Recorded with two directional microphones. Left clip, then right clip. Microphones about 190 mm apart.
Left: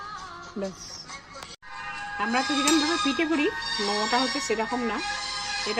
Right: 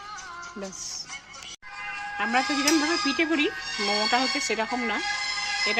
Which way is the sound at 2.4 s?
30° right (ahead or behind).